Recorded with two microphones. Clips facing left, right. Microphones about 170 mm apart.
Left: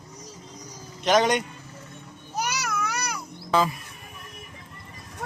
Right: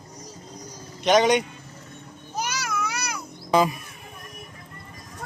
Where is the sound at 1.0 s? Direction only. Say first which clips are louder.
Right 2 dB; centre (ahead or behind).